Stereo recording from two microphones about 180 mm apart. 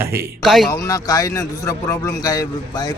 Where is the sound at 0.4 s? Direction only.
Centre (ahead or behind).